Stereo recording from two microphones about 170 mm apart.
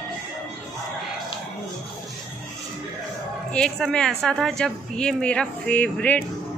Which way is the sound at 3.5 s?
5° left (ahead or behind).